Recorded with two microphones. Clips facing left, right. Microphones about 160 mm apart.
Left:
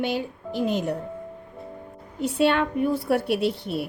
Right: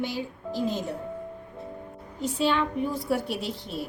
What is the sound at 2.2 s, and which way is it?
A woman's voice, 60° left (ahead or behind).